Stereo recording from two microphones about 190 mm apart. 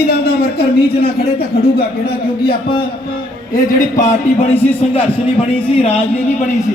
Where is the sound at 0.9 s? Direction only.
55° left (ahead or behind).